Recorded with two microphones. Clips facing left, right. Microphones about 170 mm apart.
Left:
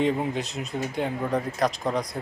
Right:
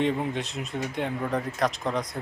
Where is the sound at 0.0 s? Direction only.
Centre (ahead or behind).